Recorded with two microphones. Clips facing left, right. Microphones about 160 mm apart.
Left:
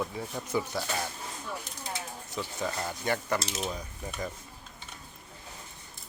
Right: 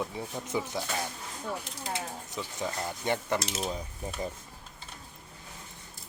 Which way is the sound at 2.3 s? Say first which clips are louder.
Left 2 dB; 15° right (ahead or behind).